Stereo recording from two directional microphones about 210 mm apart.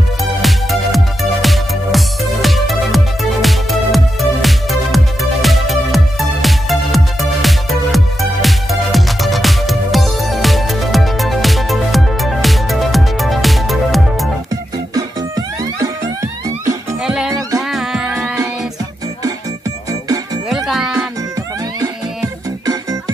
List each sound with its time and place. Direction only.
0.2 s music: centre (ahead or behind)
14.5 s music: 15° right (ahead or behind)
17.0 s music: 5° right (ahead or behind)
18.2 s music: 15° right (ahead or behind)
20.4 s music: centre (ahead or behind)